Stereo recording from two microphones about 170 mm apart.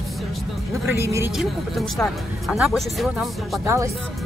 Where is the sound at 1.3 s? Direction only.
Centre (ahead or behind).